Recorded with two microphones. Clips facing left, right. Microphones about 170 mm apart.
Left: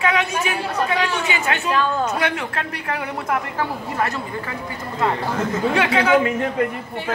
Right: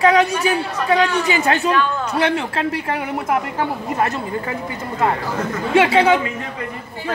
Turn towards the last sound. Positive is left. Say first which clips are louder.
# right 4 dB
turn(degrees=-25)  # may be behind; listen again after turning